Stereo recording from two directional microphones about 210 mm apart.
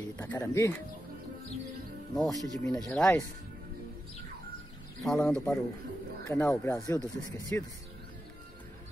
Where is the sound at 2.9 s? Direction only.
5° left (ahead or behind).